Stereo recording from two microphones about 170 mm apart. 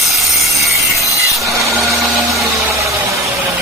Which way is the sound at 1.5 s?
15° right (ahead or behind).